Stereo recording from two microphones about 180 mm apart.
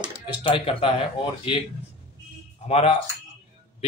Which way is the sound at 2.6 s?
35° left (ahead or behind).